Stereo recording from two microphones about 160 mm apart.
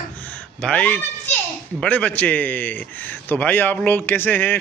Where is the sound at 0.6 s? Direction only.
5° left (ahead or behind).